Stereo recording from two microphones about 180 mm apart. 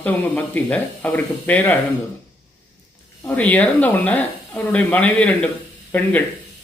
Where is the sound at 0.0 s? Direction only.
5° left (ahead or behind).